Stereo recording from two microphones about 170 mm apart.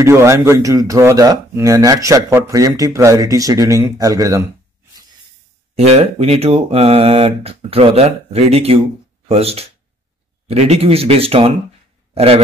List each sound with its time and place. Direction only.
0.0 s speech: 15° right (ahead or behind)
5.8 s a man's voice: 40° right (ahead or behind)